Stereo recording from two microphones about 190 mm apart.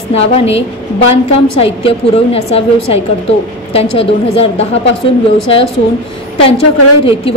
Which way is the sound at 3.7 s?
30° left (ahead or behind).